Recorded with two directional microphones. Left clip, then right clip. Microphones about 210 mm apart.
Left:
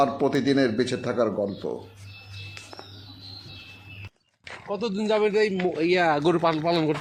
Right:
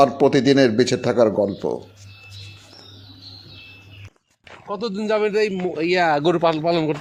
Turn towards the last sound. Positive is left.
turn(degrees=-50)  # may be behind; listen again after turning